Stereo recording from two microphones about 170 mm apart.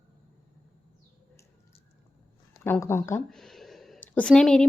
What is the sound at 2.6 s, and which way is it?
Speech, 15° left (ahead or behind).